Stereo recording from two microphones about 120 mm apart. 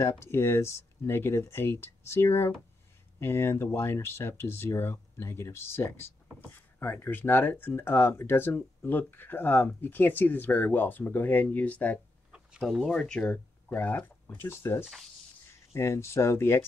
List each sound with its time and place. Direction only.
0.0 s speech: 20° left (ahead or behind)
12.3 s speech: 5° right (ahead or behind); by 16.6 s 20° left (ahead or behind)